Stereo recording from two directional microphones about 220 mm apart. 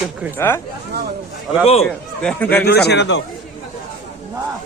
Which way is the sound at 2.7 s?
50° left (ahead or behind).